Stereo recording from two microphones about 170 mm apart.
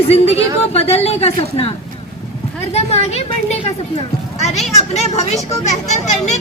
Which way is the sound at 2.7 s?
40° left (ahead or behind).